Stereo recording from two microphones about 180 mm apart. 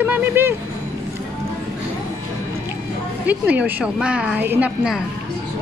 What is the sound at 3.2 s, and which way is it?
A woman's voice, 10° right (ahead or behind).